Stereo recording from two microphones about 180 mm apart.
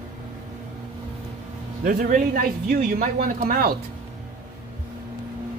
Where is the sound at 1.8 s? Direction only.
50° right (ahead or behind).